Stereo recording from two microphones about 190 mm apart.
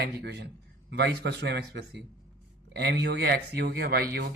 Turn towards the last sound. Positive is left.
turn(degrees=-55)  # may be behind; listen again after turning